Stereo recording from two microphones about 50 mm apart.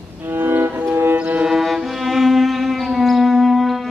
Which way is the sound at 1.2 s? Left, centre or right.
Right.